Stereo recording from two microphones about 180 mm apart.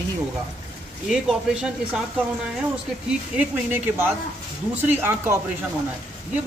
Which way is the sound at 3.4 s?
10° right (ahead or behind).